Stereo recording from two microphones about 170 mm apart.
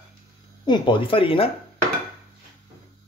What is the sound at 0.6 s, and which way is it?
Speech, 25° left (ahead or behind).